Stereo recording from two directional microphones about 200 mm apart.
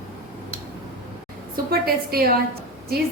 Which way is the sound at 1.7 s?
50° right (ahead or behind).